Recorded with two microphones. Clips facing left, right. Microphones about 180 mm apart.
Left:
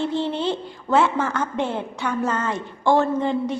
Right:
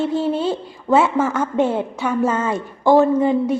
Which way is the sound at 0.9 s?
20° right (ahead or behind).